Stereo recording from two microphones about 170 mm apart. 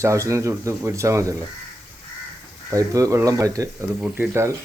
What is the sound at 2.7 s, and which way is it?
Speech, 20° right (ahead or behind).